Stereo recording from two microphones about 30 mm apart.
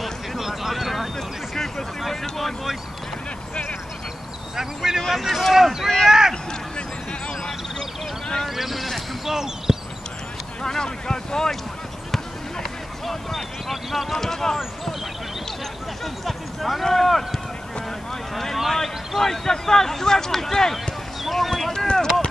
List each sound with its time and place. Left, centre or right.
0.4 s a sound: centre
4.6 s speech: centre
6.0 s a sound: centre
8.5 s speech: centre
9.3 s speech: centre
10.6 s speech: centre
13.0 s speech: centre
16.3 s speech: centre
18.7 s speech: centre
21.2 s a sound: centre